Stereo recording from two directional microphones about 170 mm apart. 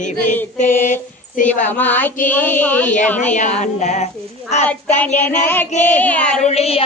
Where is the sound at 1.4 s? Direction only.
50° left (ahead or behind).